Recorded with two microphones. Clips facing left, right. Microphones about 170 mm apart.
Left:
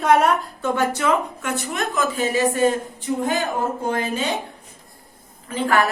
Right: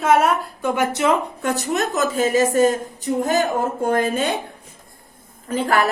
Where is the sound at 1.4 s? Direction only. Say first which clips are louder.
Right 4 dB; 40° right (ahead or behind).